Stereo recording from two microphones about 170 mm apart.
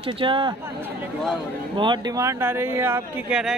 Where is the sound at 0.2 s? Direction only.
30° right (ahead or behind).